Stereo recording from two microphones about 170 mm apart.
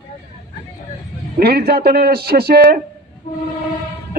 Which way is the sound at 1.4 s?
65° right (ahead or behind).